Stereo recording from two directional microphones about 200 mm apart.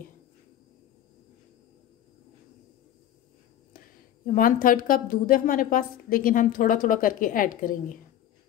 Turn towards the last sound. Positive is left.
turn(degrees=40)  # may be behind; listen again after turning